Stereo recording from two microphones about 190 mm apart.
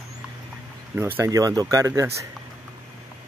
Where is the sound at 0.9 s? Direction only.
10° right (ahead or behind).